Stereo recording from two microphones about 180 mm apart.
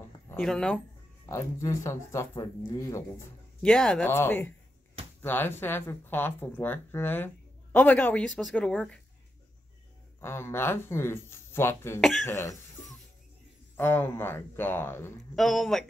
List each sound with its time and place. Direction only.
0.4 s speech: 5° left (ahead or behind)
1.3 s speech: 15° left (ahead or behind)
3.6 s speech: 5° left (ahead or behind)
10.2 s speech: 15° left (ahead or behind)
13.7 s speech: 10° left (ahead or behind)
15.3 s speech: centre (ahead or behind)